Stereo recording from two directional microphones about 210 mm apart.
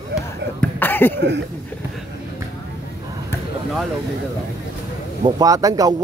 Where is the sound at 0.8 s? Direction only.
10° left (ahead or behind).